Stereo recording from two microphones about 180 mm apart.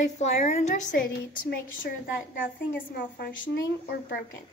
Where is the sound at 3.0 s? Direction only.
65° left (ahead or behind).